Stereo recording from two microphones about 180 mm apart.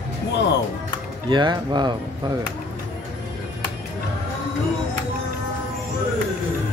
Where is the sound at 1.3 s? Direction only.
25° right (ahead or behind).